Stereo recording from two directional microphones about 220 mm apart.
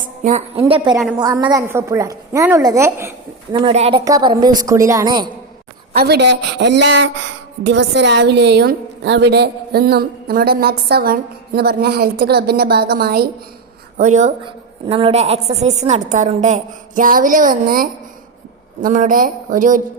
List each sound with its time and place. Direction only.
0.0 s a woman's voice: 35° right (ahead or behind)
0.6 s a woman's voice: 20° right (ahead or behind)
3.5 s a woman's voice: 25° right (ahead or behind)
4.0 s a woman's voice: 15° right (ahead or behind)
5.9 s a woman's voice: 45° right (ahead or behind)
14.0 s a woman's voice: 35° right (ahead or behind)